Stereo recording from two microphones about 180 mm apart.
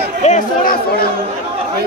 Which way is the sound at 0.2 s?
40° left (ahead or behind).